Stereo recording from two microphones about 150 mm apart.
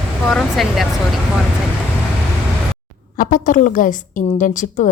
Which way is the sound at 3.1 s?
65° left (ahead or behind).